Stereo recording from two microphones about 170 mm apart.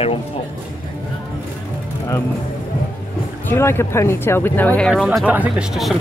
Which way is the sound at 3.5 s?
15° left (ahead or behind).